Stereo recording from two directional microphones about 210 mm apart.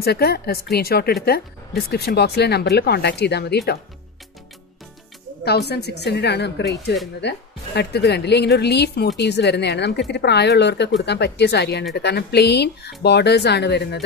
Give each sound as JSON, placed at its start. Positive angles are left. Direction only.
{"t": 0.0, "sound": "a woman's voice", "side_deg": 50}
{"t": 5.4, "sound": "a woman's voice", "side_deg": 50}